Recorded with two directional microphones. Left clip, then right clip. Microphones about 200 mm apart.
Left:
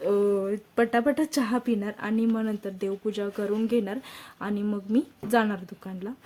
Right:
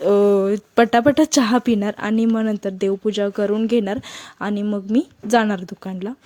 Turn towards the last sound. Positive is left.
turn(degrees=-35)  # may be behind; listen again after turning